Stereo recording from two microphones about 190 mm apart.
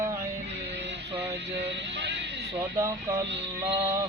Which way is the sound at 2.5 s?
15° right (ahead or behind).